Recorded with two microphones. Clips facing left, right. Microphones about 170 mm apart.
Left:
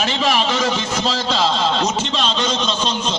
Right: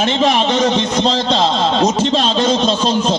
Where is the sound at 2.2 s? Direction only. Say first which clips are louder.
Right 6 dB; 40° right (ahead or behind).